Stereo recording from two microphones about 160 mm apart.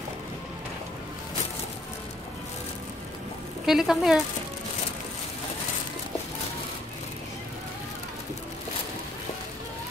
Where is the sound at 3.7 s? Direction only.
5° right (ahead or behind).